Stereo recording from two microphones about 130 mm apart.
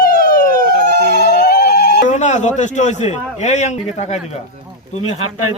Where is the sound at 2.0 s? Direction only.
65° left (ahead or behind).